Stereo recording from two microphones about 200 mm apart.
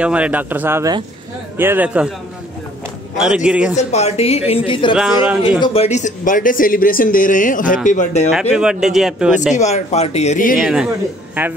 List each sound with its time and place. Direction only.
0.0 s speech: 5° right (ahead or behind)
3.2 s a man's voice: 5° right (ahead or behind)
3.7 s speech: 35° left (ahead or behind)
4.9 s a man's voice: 5° right (ahead or behind)
5.6 s speech: 30° left (ahead or behind)
8.5 s a man's voice: 5° right (ahead or behind)
9.6 s speech: 35° left (ahead or behind)
10.6 s a man's voice: 5° right (ahead or behind)